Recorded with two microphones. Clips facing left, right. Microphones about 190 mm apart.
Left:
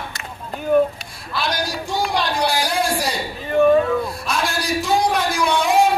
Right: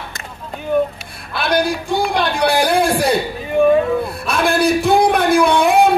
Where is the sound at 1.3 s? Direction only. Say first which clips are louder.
Right 7 dB; 60° right (ahead or behind).